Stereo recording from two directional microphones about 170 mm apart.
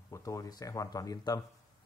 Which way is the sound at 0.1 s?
20° left (ahead or behind).